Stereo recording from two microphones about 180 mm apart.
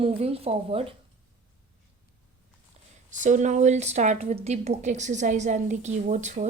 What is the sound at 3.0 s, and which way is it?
Speech, 45° right (ahead or behind).